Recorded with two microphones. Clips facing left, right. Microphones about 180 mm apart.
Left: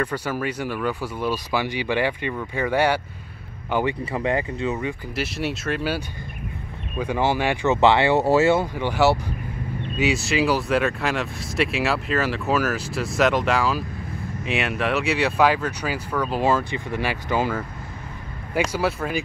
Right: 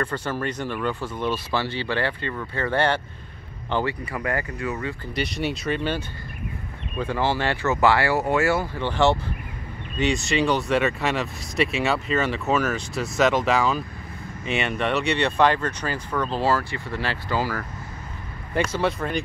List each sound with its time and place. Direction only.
0.0 s speech: 10° left (ahead or behind)
4.0 s speech: 25° left (ahead or behind)
5.1 s speech: 5° left (ahead or behind); by 8.6 s 25° left (ahead or behind)
8.7 s speech: 10° left (ahead or behind)
18.5 s speech: 5° left (ahead or behind)